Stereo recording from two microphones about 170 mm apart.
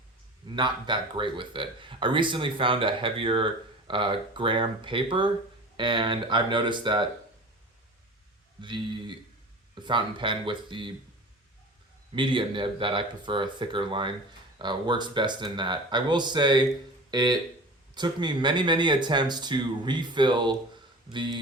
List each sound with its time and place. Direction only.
0.5 s speech: 25° right (ahead or behind)
8.6 s speech: 30° right (ahead or behind)
12.1 s speech: 30° right (ahead or behind)